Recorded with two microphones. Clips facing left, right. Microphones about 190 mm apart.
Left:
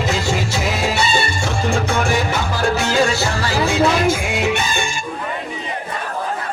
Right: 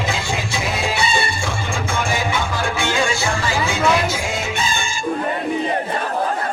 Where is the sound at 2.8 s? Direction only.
40° left (ahead or behind).